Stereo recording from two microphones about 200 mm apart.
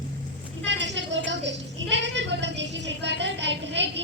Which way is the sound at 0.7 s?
65° right (ahead or behind).